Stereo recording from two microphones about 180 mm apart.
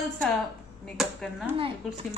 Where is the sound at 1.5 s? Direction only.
30° right (ahead or behind).